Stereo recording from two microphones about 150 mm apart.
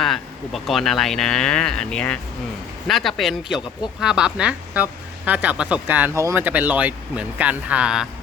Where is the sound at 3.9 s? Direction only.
5° right (ahead or behind).